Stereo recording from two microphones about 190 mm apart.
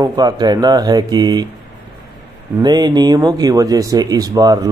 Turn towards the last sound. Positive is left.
turn(degrees=-20)  # may be behind; listen again after turning